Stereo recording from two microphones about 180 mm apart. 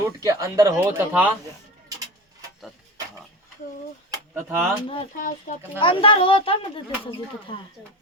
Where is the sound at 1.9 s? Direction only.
20° right (ahead or behind).